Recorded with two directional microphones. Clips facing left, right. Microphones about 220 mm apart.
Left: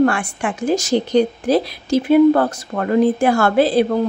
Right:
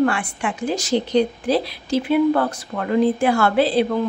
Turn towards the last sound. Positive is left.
turn(degrees=45)  # may be behind; listen again after turning